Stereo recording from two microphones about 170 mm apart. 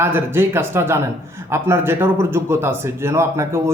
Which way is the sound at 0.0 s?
10° right (ahead or behind).